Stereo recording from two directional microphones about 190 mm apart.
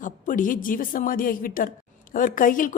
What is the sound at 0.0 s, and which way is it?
A woman's voice, 45° left (ahead or behind).